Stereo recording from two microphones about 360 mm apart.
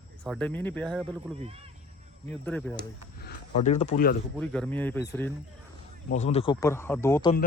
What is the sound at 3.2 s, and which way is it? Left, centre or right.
Speech, left.